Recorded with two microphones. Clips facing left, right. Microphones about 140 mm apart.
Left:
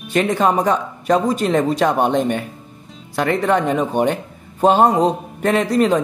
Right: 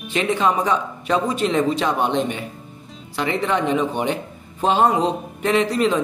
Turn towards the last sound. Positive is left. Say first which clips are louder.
# left 3 dB
turn(degrees=45)  # may be behind; listen again after turning